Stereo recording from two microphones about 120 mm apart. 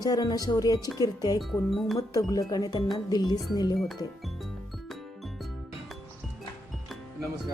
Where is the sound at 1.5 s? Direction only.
Centre (ahead or behind).